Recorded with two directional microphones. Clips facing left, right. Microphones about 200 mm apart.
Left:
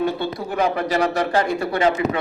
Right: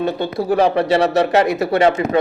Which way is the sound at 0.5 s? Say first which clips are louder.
Right 6 dB; 30° right (ahead or behind).